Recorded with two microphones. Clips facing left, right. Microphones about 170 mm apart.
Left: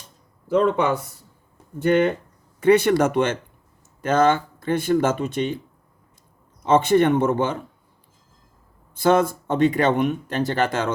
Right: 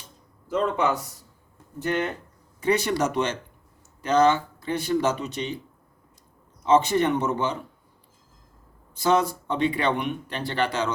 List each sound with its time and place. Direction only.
0.5 s speech: 55° left (ahead or behind)
1.8 s speech: 65° left (ahead or behind); by 5.5 s 50° left (ahead or behind)
6.6 s speech: 55° left (ahead or behind)
9.0 s speech: 50° left (ahead or behind)